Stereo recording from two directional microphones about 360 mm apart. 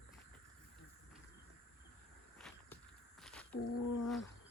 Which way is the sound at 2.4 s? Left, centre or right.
Centre.